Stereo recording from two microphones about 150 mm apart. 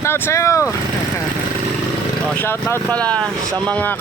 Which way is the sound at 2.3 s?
15° left (ahead or behind).